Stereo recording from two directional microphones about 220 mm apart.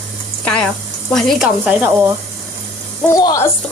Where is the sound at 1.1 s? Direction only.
Centre (ahead or behind).